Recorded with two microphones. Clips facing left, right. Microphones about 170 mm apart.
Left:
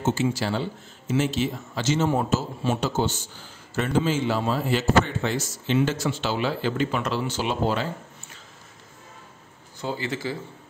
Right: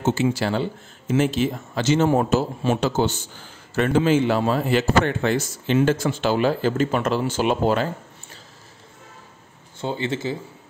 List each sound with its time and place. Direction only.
0.2 s a man's voice: 60° right (ahead or behind)
9.8 s speech: 25° right (ahead or behind)